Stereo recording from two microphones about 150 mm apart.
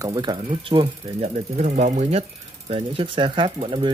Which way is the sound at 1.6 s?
50° right (ahead or behind).